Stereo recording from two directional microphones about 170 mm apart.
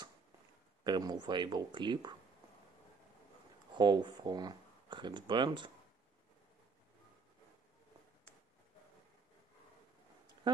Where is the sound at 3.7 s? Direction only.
25° right (ahead or behind).